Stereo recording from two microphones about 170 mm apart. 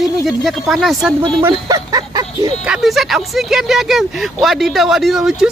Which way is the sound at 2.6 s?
5° right (ahead or behind).